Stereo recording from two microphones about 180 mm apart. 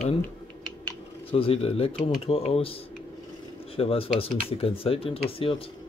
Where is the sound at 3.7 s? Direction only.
30° left (ahead or behind).